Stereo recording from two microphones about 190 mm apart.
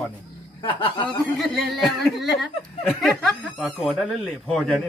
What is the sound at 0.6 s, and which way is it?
Snicker, 25° left (ahead or behind).